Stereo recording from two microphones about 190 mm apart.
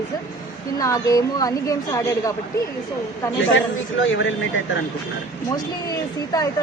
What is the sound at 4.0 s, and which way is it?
Speech, 85° left.